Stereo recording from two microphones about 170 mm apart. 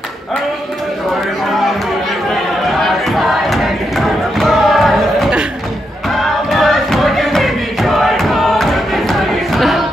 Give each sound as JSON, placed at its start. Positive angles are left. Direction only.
{"t": 2.8, "sound": "music", "side_deg": 0}